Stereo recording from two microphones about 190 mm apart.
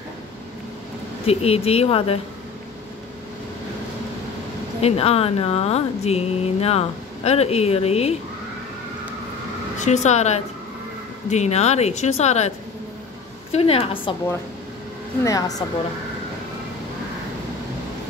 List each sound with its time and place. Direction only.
1.2 s speech: 30° left (ahead or behind)
4.8 s speech: 30° left (ahead or behind)
9.8 s speech: 35° left (ahead or behind)
15.2 s speech: 20° left (ahead or behind)